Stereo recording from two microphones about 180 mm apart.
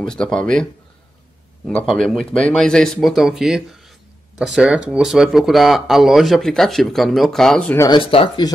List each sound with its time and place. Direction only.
0.0 s speech: 5° left (ahead or behind)
1.7 s speech: 5° left (ahead or behind)
7.7 s speech: 15° left (ahead or behind)
8.0 s speech: 30° left (ahead or behind)